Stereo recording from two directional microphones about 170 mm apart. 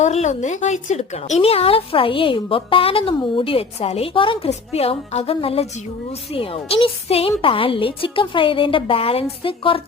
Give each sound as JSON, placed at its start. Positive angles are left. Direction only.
{"t": 0.0, "sound": "speech", "side_deg": 40}